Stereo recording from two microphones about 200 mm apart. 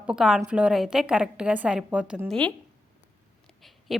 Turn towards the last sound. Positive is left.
turn(degrees=0)  # may be behind; listen again after turning